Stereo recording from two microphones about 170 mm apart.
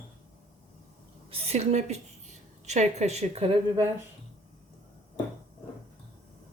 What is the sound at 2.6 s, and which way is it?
Speech, 40° right (ahead or behind).